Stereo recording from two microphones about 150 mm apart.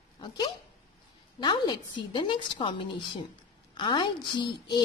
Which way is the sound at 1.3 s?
30° left (ahead or behind).